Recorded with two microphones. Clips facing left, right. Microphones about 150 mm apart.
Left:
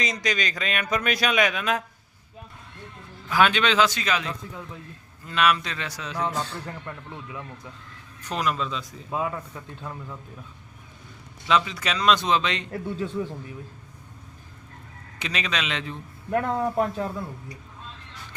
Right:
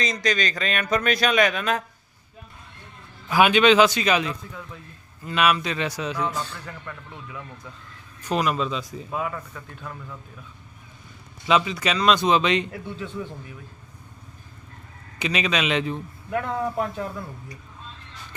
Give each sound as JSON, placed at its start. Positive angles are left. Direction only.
{"t": 0.0, "sound": "speech", "side_deg": 10}
{"t": 3.2, "sound": "a man's voice", "side_deg": -10}
{"t": 5.7, "sound": "a man's voice", "side_deg": -15}
{"t": 6.3, "sound": "speech", "side_deg": 25}
{"t": 8.3, "sound": "a man's voice", "side_deg": -5}
{"t": 9.0, "sound": "speech", "side_deg": 20}
{"t": 11.4, "sound": "speech", "side_deg": -5}
{"t": 12.7, "sound": "speech", "side_deg": 40}
{"t": 15.2, "sound": "a man's voice", "side_deg": -5}
{"t": 16.7, "sound": "speech", "side_deg": 35}